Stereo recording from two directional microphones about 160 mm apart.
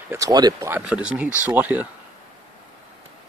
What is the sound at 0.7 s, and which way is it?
Speech, 5° right (ahead or behind).